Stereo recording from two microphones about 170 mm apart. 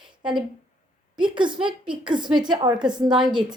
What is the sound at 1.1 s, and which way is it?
A woman's voice, 30° right (ahead or behind).